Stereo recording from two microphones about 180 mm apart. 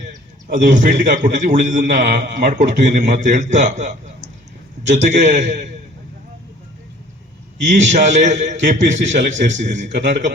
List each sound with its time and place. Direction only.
0.5 s a man's voice: 45° right (ahead or behind)
7.6 s a man's voice: 40° right (ahead or behind)